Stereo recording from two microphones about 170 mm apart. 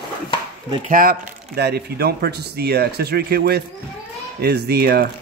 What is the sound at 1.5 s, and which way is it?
Speech, 70° right (ahead or behind).